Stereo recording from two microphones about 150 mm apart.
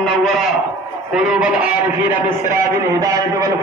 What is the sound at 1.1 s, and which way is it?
Speech, 5° right (ahead or behind).